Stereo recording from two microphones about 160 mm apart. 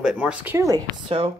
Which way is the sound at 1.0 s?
35° right (ahead or behind).